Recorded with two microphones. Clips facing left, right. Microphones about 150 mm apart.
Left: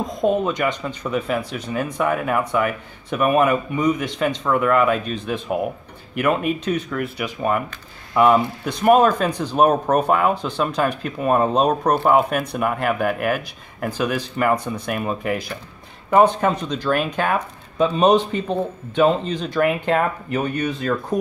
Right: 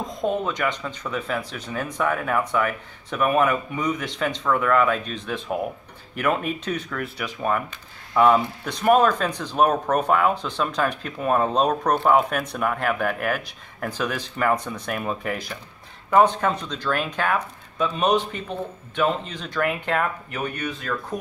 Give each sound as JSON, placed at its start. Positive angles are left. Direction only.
{"t": 0.0, "sound": "speech", "side_deg": 15}
{"t": 16.1, "sound": "speech", "side_deg": 15}